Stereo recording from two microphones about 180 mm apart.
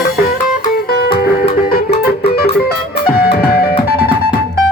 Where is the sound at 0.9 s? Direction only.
60° left (ahead or behind).